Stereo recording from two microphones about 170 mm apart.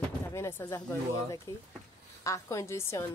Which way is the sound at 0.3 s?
15° left (ahead or behind).